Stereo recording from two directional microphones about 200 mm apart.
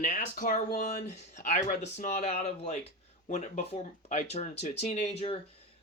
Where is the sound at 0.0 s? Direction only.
40° left (ahead or behind).